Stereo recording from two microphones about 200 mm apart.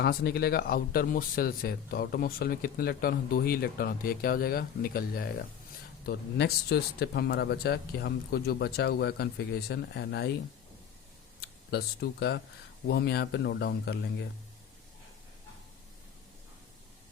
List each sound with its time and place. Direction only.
0.0 s speech: 50° left (ahead or behind)
11.3 s speech: 55° left (ahead or behind)